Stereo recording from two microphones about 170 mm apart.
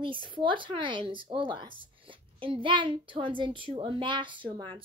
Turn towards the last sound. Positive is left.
turn(degrees=-30)  # may be behind; listen again after turning